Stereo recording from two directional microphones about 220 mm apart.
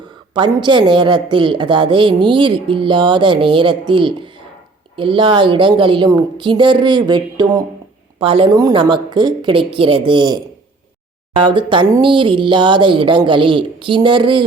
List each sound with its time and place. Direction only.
0.3 s a woman's voice: 20° right (ahead or behind)